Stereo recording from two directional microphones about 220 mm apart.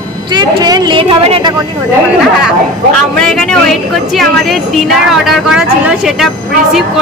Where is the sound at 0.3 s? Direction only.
20° right (ahead or behind).